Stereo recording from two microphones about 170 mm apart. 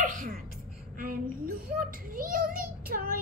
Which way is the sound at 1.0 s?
60° right (ahead or behind).